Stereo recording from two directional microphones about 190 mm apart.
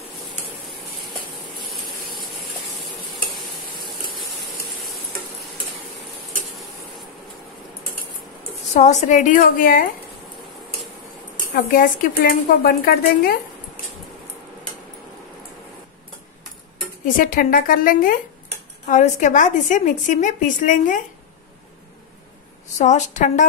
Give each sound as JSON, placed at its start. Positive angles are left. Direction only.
{"t": 1.7, "sound": "a sound", "side_deg": 0}
{"t": 8.7, "sound": "a woman's voice", "side_deg": 40}
{"t": 11.5, "sound": "speech", "side_deg": 45}
{"t": 17.2, "sound": "a woman's voice", "side_deg": 45}
{"t": 22.8, "sound": "a woman's voice", "side_deg": 40}